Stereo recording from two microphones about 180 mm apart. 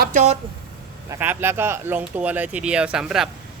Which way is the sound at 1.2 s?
10° right (ahead or behind).